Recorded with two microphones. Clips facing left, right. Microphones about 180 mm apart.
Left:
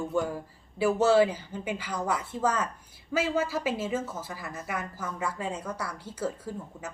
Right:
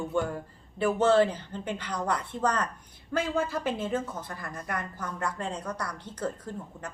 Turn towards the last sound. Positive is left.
turn(degrees=5)  # may be behind; listen again after turning